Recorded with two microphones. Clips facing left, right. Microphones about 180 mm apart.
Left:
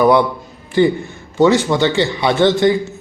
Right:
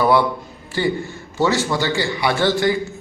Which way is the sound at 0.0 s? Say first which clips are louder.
Left 4 dB; 20° left (ahead or behind).